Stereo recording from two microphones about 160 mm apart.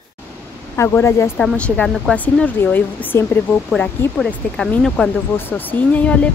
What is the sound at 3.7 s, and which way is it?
Speech, centre (ahead or behind).